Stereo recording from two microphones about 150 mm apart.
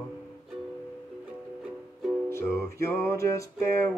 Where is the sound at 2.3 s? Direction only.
15° left (ahead or behind).